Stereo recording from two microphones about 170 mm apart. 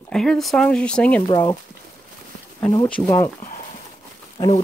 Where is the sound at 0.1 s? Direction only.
5° left (ahead or behind).